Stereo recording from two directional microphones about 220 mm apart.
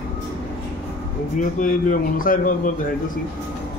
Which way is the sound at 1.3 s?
40° left (ahead or behind).